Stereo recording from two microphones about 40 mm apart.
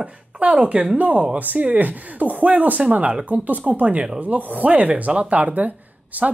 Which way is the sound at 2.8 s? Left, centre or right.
Right.